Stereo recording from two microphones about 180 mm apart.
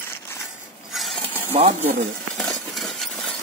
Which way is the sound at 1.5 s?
35° right (ahead or behind).